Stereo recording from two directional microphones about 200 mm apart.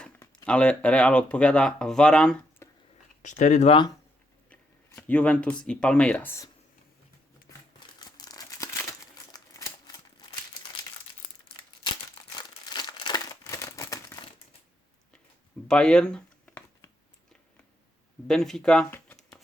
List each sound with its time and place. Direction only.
0.4 s speech: 5° left (ahead or behind)
3.2 s speech: 40° left (ahead or behind)
4.4 s speech: 10° left (ahead or behind)
8.0 s crumpling: 20° left (ahead or behind)
12.4 s crumpling: 20° left (ahead or behind)
15.6 s a sound: 5° left (ahead or behind)
18.3 s speech: centre (ahead or behind)